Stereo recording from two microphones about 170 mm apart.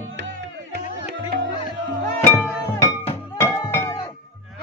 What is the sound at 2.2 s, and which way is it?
Music, 10° left (ahead or behind).